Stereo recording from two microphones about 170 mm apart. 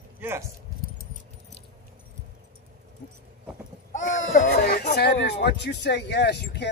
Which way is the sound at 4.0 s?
50° left (ahead or behind).